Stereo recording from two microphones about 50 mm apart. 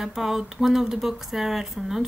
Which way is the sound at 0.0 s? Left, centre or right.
Centre.